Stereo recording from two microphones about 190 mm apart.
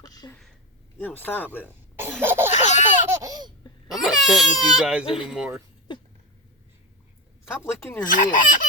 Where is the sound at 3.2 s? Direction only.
20° right (ahead or behind).